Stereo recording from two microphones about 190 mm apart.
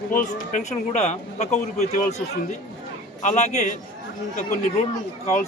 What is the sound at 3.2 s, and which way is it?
Speech, 35° left (ahead or behind).